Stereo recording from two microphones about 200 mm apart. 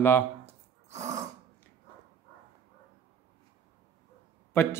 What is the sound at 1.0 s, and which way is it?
Throat clearing, 15° right (ahead or behind).